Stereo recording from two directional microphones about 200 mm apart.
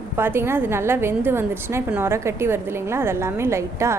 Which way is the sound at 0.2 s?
10° right (ahead or behind).